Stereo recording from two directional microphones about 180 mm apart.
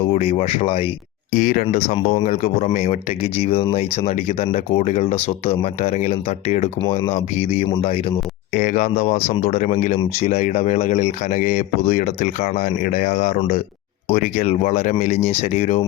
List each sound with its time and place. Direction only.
0.0 s speech: 30° left (ahead or behind)
1.3 s speech: 50° left (ahead or behind)
1.7 s speech: 35° left (ahead or behind)
2.2 s speech: 45° left (ahead or behind)
8.5 s speech: 45° left (ahead or behind)